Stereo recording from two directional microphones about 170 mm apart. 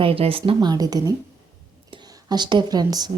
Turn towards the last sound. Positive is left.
turn(degrees=-25)  # may be behind; listen again after turning